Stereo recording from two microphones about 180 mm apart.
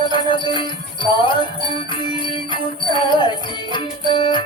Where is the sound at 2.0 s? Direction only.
30° left (ahead or behind).